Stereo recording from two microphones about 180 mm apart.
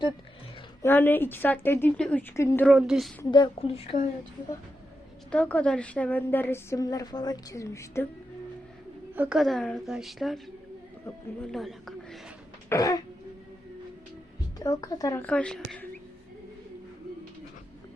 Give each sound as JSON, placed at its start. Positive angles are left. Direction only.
{"t": 0.8, "sound": "a woman's voice", "side_deg": 10}
{"t": 2.6, "sound": "a woman's voice", "side_deg": -5}
{"t": 3.3, "sound": "a woman's voice", "side_deg": 30}
{"t": 5.3, "sound": "a woman's voice", "side_deg": 5}
{"t": 9.1, "sound": "a woman's voice", "side_deg": -5}
{"t": 11.5, "sound": "speech", "side_deg": 0}
{"t": 12.6, "sound": "throat clearing", "side_deg": 15}
{"t": 14.6, "sound": "a woman's voice", "side_deg": 20}
{"t": 15.3, "sound": "a woman's voice", "side_deg": 5}